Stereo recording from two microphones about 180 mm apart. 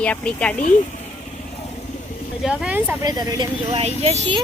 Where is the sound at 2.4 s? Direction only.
5° right (ahead or behind).